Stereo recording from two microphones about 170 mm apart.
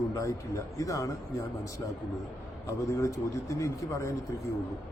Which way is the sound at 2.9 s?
20° left (ahead or behind).